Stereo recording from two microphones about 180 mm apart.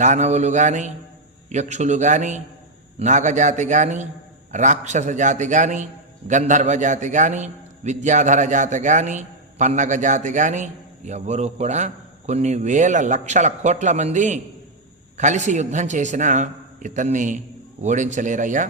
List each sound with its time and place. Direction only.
0.0 s a man's voice: 40° right (ahead or behind)